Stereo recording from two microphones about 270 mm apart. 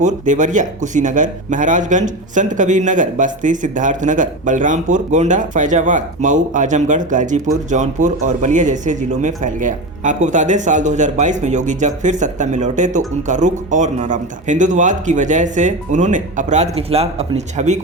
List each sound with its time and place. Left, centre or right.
0.0 s speech: right